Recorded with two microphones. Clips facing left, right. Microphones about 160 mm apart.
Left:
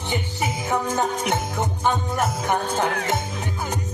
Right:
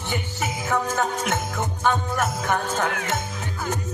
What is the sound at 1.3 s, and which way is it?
Music, 15° left (ahead or behind).